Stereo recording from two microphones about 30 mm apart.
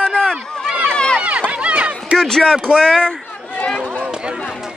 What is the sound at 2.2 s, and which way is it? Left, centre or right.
Speech, left.